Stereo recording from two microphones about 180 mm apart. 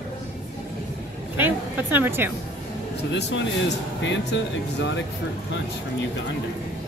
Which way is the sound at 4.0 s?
80° left.